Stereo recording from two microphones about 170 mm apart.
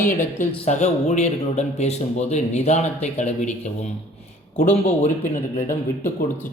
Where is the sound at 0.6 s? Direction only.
40° left (ahead or behind).